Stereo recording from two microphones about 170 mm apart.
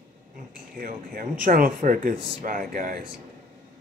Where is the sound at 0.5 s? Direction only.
55° right (ahead or behind).